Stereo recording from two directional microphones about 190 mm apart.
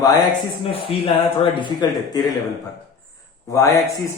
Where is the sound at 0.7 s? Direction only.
30° left (ahead or behind).